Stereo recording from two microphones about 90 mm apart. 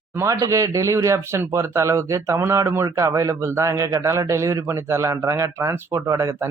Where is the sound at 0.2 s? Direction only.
35° right (ahead or behind).